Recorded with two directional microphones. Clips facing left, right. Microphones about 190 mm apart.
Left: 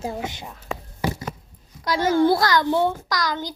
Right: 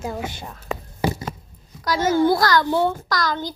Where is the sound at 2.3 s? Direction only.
25° left (ahead or behind).